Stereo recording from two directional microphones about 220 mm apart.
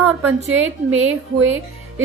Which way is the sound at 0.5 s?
65° right (ahead or behind).